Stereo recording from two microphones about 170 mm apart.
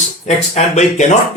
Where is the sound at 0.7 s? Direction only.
45° left (ahead or behind).